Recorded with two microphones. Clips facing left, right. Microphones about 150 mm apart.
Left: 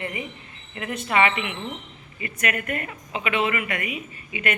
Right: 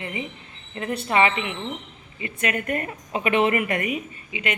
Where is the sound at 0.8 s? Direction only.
35° right (ahead or behind).